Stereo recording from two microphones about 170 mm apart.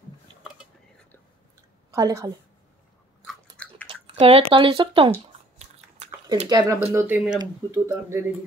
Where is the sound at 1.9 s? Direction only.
20° right (ahead or behind).